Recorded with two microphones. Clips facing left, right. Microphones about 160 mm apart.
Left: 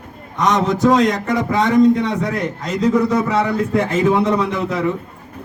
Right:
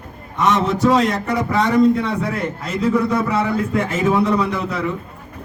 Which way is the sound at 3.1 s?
20° left (ahead or behind).